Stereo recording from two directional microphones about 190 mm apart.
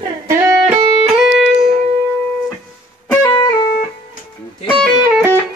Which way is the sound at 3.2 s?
25° left (ahead or behind).